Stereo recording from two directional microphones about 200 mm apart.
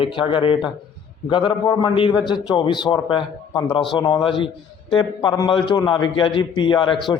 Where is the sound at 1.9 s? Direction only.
25° left (ahead or behind).